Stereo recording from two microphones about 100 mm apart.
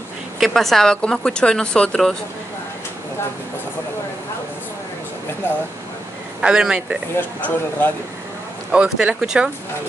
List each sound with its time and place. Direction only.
0.4 s speech: centre (ahead or behind)
6.4 s speech: 10° right (ahead or behind)
7.2 s speech: 20° left (ahead or behind)
8.7 s speech: 10° right (ahead or behind)